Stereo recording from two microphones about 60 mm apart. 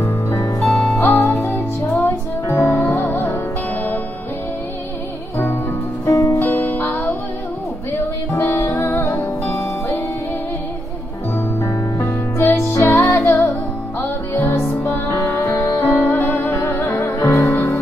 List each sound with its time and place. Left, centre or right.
0.9 s music: left
6.0 s music: left
6.4 s music: left
8.4 s music: left
11.6 s music: left